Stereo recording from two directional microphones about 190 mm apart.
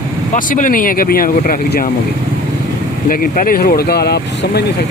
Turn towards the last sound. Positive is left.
turn(degrees=60)  # may be behind; listen again after turning